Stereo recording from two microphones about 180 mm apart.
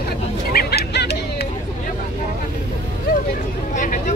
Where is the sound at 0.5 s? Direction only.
65° left (ahead or behind).